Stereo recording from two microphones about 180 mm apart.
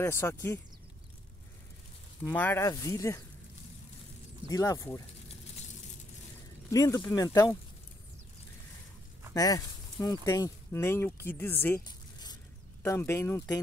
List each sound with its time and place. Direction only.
0.0 s speech: 15° left (ahead or behind)
2.2 s speech: 10° left (ahead or behind)
4.5 s speech: 20° left (ahead or behind)
6.7 s speech: 20° left (ahead or behind)
9.3 s speech: 20° left (ahead or behind)
11.8 s a sound: 25° left (ahead or behind)
12.8 s speech: 15° left (ahead or behind)